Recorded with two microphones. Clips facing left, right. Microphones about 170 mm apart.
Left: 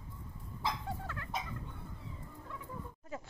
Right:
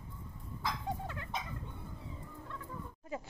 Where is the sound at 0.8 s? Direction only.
20° right (ahead or behind).